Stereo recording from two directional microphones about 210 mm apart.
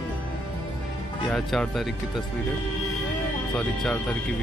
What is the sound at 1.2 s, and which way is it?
Speech, centre (ahead or behind).